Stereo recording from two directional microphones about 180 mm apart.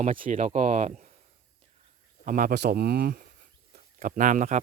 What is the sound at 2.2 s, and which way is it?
Speech, 50° right (ahead or behind).